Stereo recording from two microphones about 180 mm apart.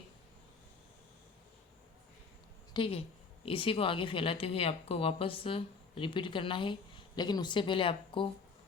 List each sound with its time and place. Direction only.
2.7 s speech: 30° left (ahead or behind)